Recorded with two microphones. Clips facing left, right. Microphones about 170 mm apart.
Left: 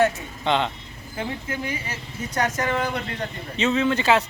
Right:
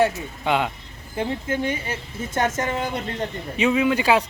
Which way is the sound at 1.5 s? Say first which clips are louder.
Right 5 dB; 30° right (ahead or behind).